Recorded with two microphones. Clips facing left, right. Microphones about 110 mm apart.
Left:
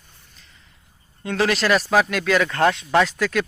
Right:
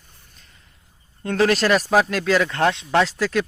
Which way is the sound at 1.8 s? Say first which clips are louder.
Right 1 dB; 10° right (ahead or behind).